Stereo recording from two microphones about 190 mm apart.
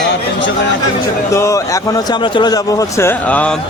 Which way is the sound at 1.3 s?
15° left (ahead or behind).